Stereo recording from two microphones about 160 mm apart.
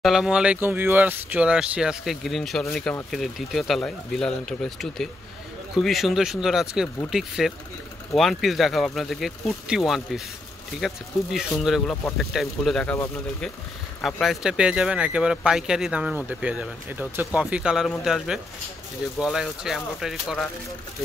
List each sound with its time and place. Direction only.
0.0 s speech: centre (ahead or behind)
11.3 s speech: centre (ahead or behind)
14.2 s speech: centre (ahead or behind)